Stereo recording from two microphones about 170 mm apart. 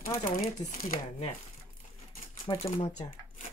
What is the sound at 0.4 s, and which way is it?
Speech, 55° left (ahead or behind).